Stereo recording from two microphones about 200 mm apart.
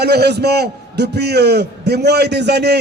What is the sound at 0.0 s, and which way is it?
A man's voice, 55° right (ahead or behind).